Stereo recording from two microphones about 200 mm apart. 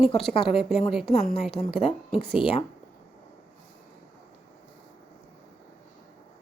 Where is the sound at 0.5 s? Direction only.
30° left (ahead or behind).